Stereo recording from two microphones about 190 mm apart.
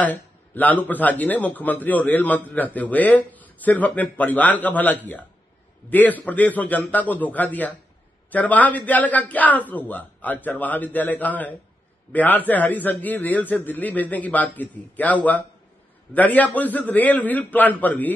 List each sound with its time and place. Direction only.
0.0 s speech: 10° left (ahead or behind)